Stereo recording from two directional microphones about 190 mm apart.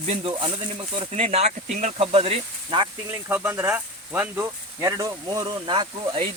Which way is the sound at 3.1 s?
10° right (ahead or behind).